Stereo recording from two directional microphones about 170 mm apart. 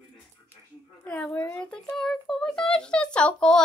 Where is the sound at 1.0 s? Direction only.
10° left (ahead or behind).